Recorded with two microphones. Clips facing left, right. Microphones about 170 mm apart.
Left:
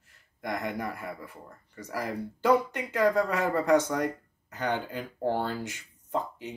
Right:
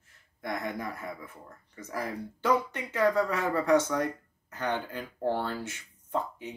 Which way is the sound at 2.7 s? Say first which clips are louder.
Left 1 dB; 15° left (ahead or behind).